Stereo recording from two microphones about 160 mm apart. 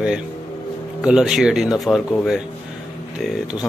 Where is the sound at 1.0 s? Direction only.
5° right (ahead or behind).